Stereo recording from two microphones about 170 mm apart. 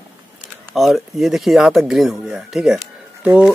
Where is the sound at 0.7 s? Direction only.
Centre (ahead or behind).